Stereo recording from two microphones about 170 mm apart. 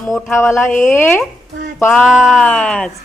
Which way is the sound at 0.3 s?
15° left (ahead or behind).